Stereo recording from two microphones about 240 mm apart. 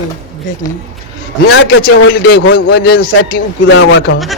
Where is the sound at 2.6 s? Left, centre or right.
Left.